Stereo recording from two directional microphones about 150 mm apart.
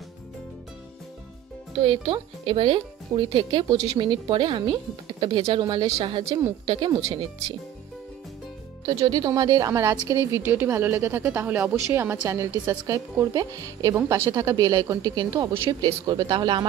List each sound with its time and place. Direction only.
1.8 s speech: 35° right (ahead or behind)
8.8 s speech: 30° right (ahead or behind)